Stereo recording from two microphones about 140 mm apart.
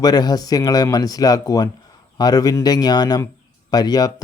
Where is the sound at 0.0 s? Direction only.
30° left (ahead or behind).